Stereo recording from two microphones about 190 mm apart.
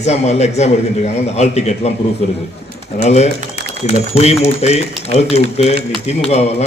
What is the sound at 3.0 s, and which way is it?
A man's voice, 35° left (ahead or behind).